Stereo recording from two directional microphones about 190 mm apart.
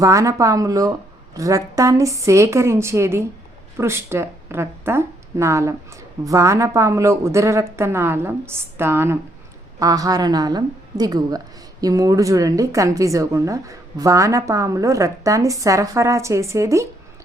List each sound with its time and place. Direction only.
0.0 s a woman's voice: 15° right (ahead or behind)